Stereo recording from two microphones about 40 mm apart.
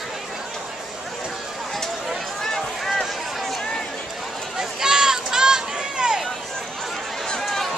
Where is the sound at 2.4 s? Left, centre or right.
Centre.